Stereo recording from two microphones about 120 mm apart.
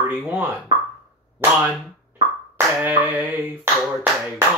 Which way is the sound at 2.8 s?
15° right (ahead or behind).